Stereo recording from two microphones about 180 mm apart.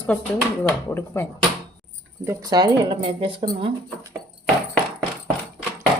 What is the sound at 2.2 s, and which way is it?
Speech, 15° right (ahead or behind).